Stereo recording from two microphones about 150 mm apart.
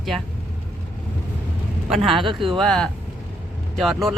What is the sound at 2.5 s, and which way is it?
Speech, 5° left (ahead or behind).